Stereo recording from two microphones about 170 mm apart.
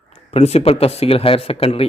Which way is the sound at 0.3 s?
40° left (ahead or behind).